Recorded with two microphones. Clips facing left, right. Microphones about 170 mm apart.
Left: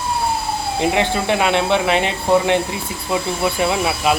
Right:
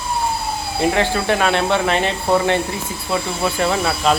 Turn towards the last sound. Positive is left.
turn(degrees=10)  # may be behind; listen again after turning